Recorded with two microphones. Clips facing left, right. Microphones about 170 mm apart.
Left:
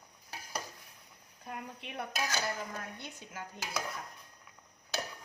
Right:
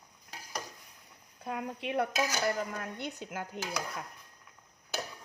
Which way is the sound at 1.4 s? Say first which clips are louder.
Right 8 dB; 90° right.